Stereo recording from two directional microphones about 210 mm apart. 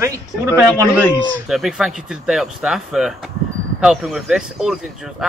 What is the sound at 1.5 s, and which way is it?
Speech, centre (ahead or behind).